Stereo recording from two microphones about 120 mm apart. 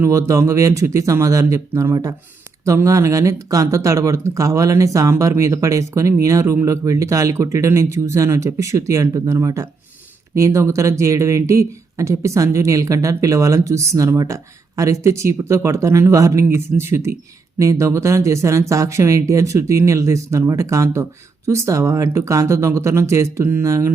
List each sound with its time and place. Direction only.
0.0 s speech: 25° right (ahead or behind)